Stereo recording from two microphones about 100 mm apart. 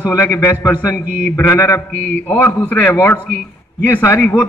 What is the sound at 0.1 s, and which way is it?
A man's voice, 30° left (ahead or behind).